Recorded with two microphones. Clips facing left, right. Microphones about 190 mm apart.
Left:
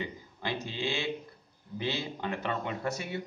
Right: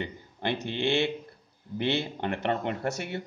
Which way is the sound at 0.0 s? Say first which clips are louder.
Right 4 dB; 60° right (ahead or behind).